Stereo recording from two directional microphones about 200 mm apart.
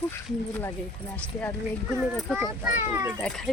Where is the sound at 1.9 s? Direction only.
Centre (ahead or behind).